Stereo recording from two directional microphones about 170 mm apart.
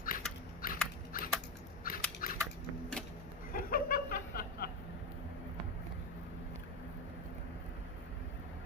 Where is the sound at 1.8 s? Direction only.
60° left (ahead or behind).